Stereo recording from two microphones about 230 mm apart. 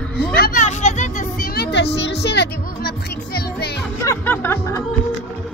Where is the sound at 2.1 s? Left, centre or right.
Left.